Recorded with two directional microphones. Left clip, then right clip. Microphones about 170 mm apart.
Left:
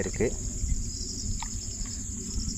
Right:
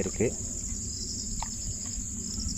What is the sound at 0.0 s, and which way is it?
Speech, 15° right (ahead or behind).